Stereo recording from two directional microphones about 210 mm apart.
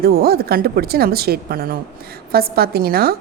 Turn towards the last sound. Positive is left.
turn(degrees=-45)  # may be behind; listen again after turning